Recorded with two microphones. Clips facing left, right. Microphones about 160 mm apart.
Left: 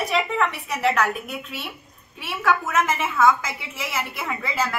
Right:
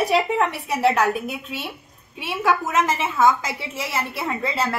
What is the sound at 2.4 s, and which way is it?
A woman's voice, 20° right (ahead or behind).